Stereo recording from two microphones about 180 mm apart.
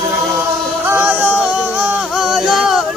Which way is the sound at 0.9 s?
10° right (ahead or behind).